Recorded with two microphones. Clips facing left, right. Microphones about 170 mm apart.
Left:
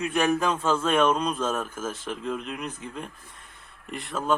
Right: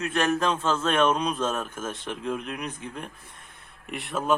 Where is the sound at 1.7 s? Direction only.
5° left (ahead or behind).